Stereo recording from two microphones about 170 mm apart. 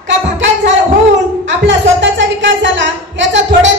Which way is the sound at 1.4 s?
90° right.